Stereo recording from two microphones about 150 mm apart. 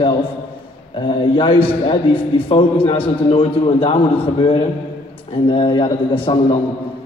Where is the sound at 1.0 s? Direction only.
35° left (ahead or behind).